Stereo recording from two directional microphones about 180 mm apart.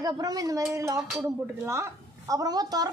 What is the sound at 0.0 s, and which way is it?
A woman's voice, 20° right (ahead or behind).